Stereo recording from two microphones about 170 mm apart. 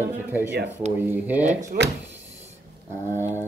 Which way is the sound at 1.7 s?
60° right (ahead or behind).